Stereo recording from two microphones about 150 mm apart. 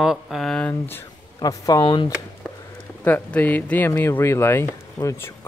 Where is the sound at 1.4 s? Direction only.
25° left (ahead or behind).